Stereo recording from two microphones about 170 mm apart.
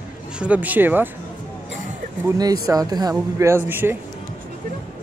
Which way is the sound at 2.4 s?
20° right (ahead or behind).